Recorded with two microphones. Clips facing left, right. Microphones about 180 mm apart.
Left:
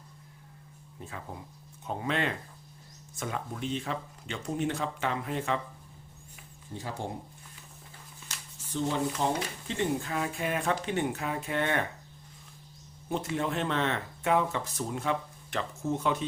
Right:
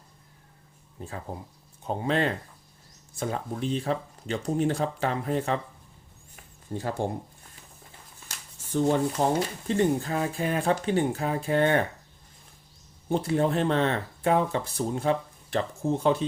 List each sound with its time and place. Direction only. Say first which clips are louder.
0.9 s speech: right 5 dB; 35° right (ahead or behind)
6.3 s a sound: right 8 dB; 50° right (ahead or behind)
8.7 s speech: right 6 dB; 50° right (ahead or behind)
9.6 s speech: right 6 dB; 40° right (ahead or behind)
13.1 s speech: right 6 dB; 35° right (ahead or behind)